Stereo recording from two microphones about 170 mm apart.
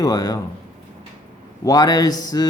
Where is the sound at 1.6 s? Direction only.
20° left (ahead or behind).